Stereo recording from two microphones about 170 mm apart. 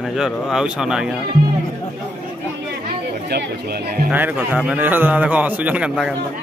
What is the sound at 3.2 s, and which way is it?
Speech, 65° right (ahead or behind).